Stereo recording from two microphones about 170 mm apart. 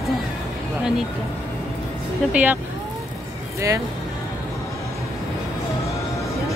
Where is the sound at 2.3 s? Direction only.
10° right (ahead or behind).